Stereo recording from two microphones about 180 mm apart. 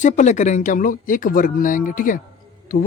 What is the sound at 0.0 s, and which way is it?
Speech, 40° left (ahead or behind).